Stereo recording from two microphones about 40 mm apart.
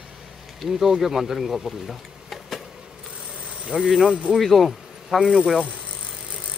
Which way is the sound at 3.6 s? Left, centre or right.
Centre.